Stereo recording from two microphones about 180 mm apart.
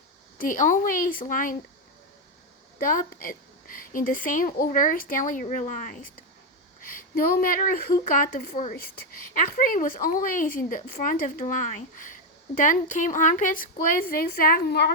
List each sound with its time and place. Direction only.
0.3 s a woman's voice: 45° left (ahead or behind)
2.7 s a woman's voice: 50° left (ahead or behind)